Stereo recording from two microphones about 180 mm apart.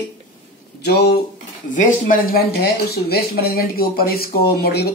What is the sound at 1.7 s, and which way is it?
Speech, 50° left (ahead or behind).